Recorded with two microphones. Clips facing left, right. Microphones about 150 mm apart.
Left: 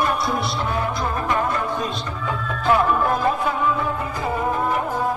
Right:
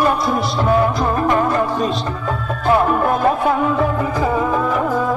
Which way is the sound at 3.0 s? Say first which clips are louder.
Right 5 dB; 60° right (ahead or behind).